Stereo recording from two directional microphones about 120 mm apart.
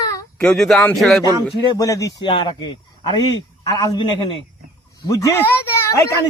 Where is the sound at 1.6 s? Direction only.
40° left (ahead or behind).